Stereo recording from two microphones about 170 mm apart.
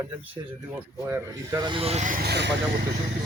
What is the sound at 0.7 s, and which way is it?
Speech, 15° right (ahead or behind).